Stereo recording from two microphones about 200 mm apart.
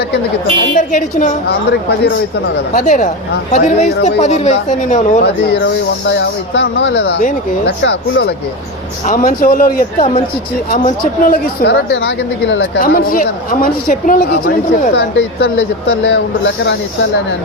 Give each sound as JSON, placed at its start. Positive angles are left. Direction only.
{"t": 0.8, "sound": "speech", "side_deg": 40}
{"t": 1.5, "sound": "speech", "side_deg": 55}
{"t": 2.7, "sound": "speech", "side_deg": 40}
{"t": 6.1, "sound": "speech", "side_deg": 60}
{"t": 7.8, "sound": "speech", "side_deg": 60}
{"t": 9.0, "sound": "speech", "side_deg": 45}
{"t": 12.8, "sound": "speech", "side_deg": 45}
{"t": 14.9, "sound": "speech", "side_deg": 60}